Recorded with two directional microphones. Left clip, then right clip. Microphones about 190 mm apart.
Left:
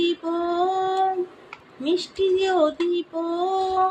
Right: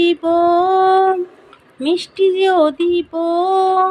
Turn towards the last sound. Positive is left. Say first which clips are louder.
# right 8 dB
turn(degrees=-55)  # may be behind; listen again after turning